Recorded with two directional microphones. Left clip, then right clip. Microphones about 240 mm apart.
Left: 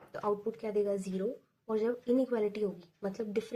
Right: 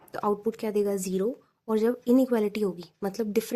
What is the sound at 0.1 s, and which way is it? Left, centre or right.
Speech, right.